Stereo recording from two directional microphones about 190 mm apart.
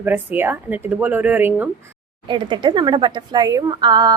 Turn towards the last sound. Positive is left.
turn(degrees=-20)  # may be behind; listen again after turning